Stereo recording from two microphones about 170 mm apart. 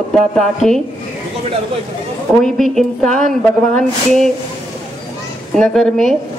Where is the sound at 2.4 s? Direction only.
Centre (ahead or behind).